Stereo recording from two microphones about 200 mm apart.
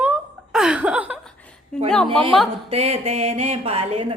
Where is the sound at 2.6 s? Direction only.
30° right (ahead or behind).